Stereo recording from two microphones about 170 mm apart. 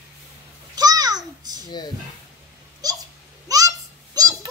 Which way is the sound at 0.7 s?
20° right (ahead or behind).